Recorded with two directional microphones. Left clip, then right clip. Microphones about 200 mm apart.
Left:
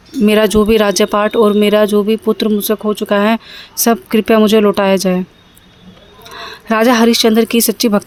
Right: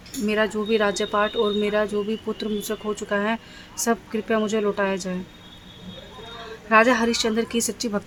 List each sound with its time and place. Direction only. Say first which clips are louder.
0.3 s speech: left 12 dB; 50° left (ahead or behind)
6.4 s speech: left 4 dB; 50° left (ahead or behind)